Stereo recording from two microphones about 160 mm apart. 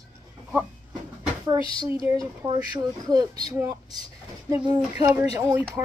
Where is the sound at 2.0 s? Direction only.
25° right (ahead or behind).